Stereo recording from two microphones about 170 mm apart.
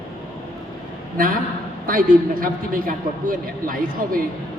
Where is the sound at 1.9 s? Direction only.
55° right (ahead or behind).